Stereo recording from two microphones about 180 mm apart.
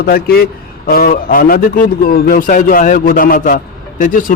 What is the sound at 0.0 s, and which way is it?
A man's voice, 60° left (ahead or behind).